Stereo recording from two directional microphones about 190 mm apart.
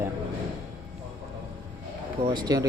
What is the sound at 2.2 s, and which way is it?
Speech, 25° right (ahead or behind).